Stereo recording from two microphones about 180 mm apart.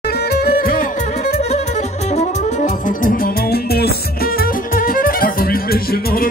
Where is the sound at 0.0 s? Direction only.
60° left (ahead or behind).